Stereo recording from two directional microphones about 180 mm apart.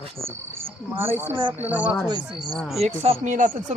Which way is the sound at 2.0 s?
25° right (ahead or behind).